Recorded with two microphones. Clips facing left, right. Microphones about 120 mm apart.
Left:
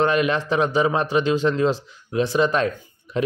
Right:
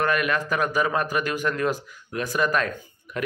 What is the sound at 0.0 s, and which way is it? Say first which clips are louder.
Speech: left 4 dB; 25° left (ahead or behind).